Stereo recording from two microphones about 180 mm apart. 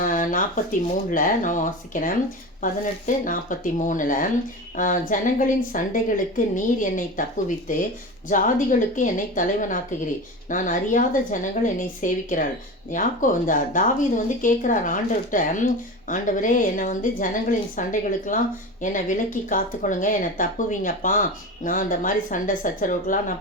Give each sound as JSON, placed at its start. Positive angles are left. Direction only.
{"t": 0.0, "sound": "speech", "side_deg": 50}